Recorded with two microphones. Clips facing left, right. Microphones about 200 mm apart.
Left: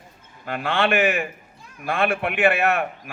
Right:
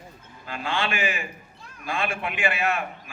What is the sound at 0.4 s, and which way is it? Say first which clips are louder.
A man's voice: left 6 dB; 60° left (ahead or behind).